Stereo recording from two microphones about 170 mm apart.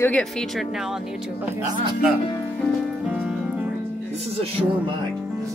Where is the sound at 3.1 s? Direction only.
10° right (ahead or behind).